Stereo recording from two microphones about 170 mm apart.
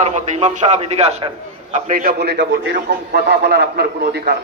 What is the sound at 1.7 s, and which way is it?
A man's voice, 55° right (ahead or behind).